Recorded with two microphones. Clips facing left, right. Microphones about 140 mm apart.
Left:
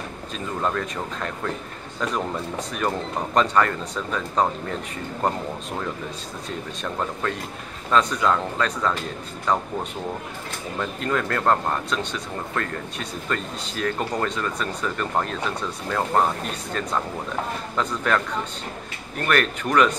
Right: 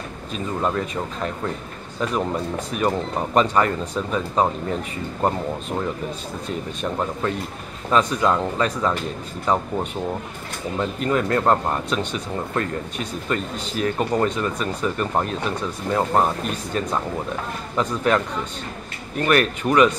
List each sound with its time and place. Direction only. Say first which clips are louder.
0.6 s speech: right 2 dB; 10° right (ahead or behind)
2.8 s speech: right 3 dB; 10° right (ahead or behind)
7.9 s speech: right 1 dB; 10° right (ahead or behind)
10.8 s speech: right 3 dB; 15° right (ahead or behind)
19.2 s speech: right 3 dB; 10° right (ahead or behind)